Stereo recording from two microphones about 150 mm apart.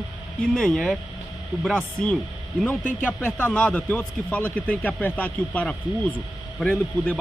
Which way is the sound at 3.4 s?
10° left (ahead or behind).